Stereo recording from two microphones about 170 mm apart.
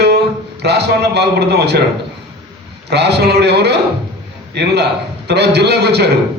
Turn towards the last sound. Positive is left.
turn(degrees=-75)  # may be behind; listen again after turning